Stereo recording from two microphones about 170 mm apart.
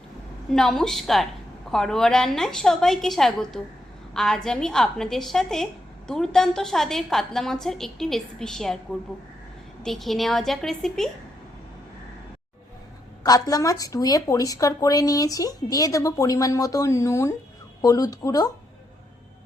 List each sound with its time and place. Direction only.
0.5 s a woman's voice: 5° left (ahead or behind)
9.8 s a woman's voice: centre (ahead or behind)
13.2 s speech: 20° left (ahead or behind)